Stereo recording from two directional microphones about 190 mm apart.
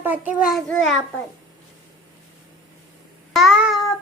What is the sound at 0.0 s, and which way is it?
Speech, 10° right (ahead or behind).